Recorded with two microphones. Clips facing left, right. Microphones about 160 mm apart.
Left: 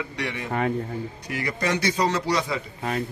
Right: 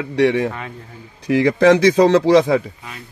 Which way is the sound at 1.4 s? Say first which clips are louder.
Right 13 dB; 90° right.